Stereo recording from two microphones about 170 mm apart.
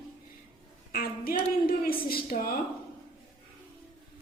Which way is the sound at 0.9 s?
60° left (ahead or behind).